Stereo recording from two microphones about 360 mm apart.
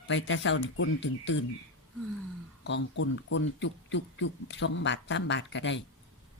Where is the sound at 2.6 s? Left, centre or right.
Left.